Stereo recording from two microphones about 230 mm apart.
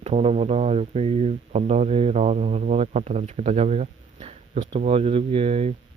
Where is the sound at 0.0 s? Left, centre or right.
Right.